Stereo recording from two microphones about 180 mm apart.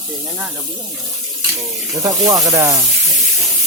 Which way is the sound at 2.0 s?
20° right (ahead or behind).